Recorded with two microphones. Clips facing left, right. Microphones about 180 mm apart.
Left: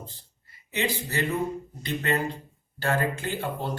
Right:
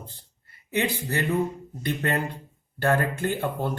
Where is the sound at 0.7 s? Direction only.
55° right (ahead or behind).